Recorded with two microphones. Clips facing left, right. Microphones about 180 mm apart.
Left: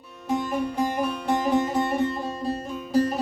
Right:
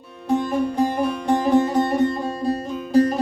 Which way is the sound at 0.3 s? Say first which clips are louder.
Right 5 dB; 35° right (ahead or behind).